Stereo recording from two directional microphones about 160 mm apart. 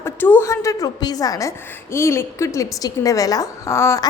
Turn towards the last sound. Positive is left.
turn(degrees=20)  # may be behind; listen again after turning